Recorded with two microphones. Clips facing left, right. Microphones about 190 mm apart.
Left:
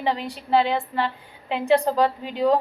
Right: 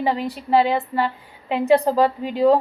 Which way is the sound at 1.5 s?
40° right (ahead or behind).